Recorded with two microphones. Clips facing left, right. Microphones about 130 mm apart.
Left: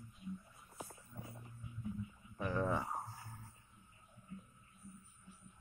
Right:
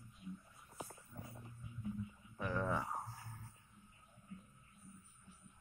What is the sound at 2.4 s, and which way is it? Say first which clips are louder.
Speech: left 2 dB; 15° left (ahead or behind).